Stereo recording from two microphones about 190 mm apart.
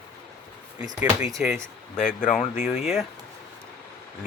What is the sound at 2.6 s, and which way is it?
Speech, centre (ahead or behind).